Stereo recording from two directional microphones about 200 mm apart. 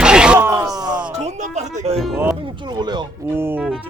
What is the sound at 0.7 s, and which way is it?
Music, 20° right (ahead or behind).